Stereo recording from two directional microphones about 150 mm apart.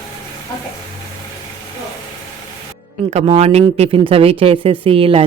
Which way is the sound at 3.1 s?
45° right (ahead or behind).